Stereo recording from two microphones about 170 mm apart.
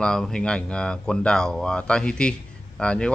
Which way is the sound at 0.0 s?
5° left (ahead or behind).